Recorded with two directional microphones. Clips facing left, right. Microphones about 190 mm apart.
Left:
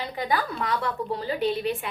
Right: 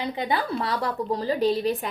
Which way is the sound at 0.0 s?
25° right (ahead or behind).